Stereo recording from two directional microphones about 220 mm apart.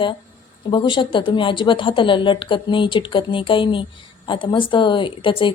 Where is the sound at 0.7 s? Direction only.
20° left (ahead or behind).